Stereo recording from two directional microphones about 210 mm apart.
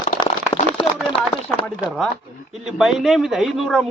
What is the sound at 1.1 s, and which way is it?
Chopping, 25° left (ahead or behind).